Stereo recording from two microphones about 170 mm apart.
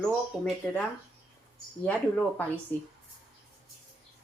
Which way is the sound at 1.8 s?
10° left (ahead or behind).